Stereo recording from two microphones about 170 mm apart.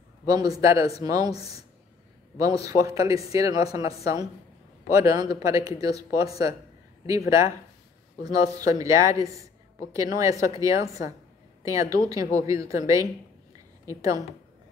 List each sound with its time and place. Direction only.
0.3 s a woman's voice: 20° right (ahead or behind)
2.6 s a woman's voice: 20° right (ahead or behind)